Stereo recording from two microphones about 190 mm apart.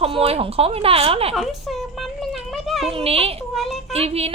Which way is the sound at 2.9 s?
30° right (ahead or behind).